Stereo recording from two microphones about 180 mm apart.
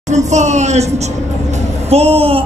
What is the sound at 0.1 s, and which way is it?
A woman's voice, 40° right (ahead or behind).